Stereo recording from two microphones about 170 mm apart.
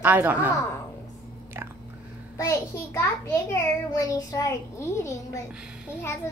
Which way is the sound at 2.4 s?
15° left (ahead or behind).